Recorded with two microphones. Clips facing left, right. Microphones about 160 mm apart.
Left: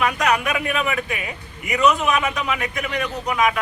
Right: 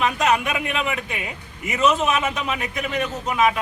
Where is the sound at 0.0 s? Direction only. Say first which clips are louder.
Even; 25° right (ahead or behind).